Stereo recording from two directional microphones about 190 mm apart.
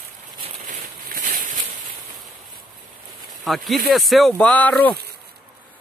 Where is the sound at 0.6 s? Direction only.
45° right (ahead or behind).